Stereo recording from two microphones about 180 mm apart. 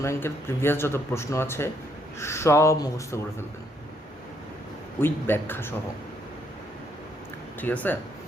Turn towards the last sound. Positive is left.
turn(degrees=10)  # may be behind; listen again after turning